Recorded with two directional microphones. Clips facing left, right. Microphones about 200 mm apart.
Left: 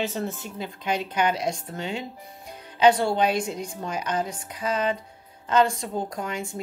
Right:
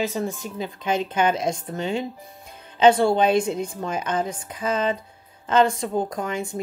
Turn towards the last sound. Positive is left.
turn(degrees=-20)  # may be behind; listen again after turning